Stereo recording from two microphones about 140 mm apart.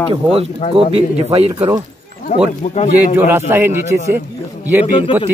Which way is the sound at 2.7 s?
50° left (ahead or behind).